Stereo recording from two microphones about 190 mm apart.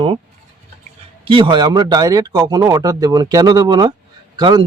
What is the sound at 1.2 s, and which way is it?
Speech, 25° right (ahead or behind).